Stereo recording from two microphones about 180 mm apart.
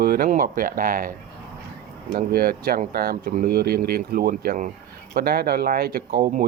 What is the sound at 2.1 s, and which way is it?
Speech, 55° right (ahead or behind).